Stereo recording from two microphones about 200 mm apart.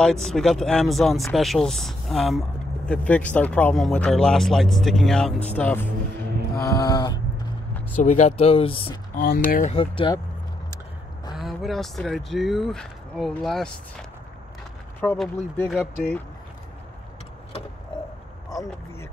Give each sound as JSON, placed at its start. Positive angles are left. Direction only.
{"t": 0.0, "sound": "speech", "side_deg": 0}
{"t": 6.6, "sound": "a sound", "side_deg": 15}
{"t": 8.0, "sound": "speech", "side_deg": 35}
{"t": 9.1, "sound": "speech", "side_deg": 50}
{"t": 9.8, "sound": "speech", "side_deg": 25}
{"t": 11.3, "sound": "speech", "side_deg": 0}
{"t": 15.0, "sound": "speech", "side_deg": 10}
{"t": 15.6, "sound": "speech", "side_deg": 0}